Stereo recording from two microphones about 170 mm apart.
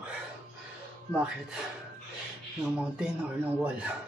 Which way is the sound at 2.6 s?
5° right (ahead or behind).